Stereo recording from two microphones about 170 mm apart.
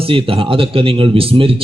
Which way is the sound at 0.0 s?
35° right (ahead or behind).